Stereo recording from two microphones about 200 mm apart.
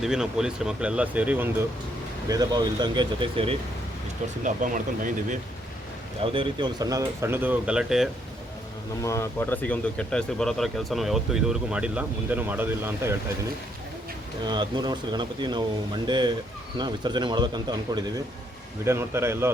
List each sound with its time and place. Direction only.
0.0 s speech: 5° right (ahead or behind)
2.3 s speech: 20° right (ahead or behind)
4.4 s speech: 40° right (ahead or behind)
6.2 s speech: 25° right (ahead or behind); by 8.1 s centre (ahead or behind)
9.0 s speech: 15° left (ahead or behind); by 13.1 s 10° right (ahead or behind)
14.4 s speech: 20° right (ahead or behind)